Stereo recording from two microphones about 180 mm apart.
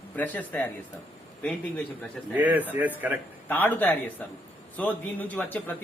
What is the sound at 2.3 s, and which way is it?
Speech, 10° right (ahead or behind).